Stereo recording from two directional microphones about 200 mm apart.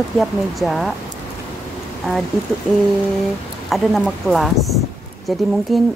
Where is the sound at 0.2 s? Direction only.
Centre (ahead or behind).